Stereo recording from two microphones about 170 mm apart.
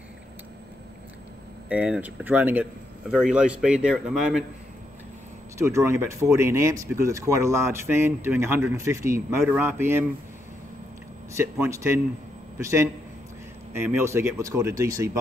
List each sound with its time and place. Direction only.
1.7 s speech: 10° right (ahead or behind)
5.6 s speech: 15° right (ahead or behind)
11.3 s speech: 15° right (ahead or behind)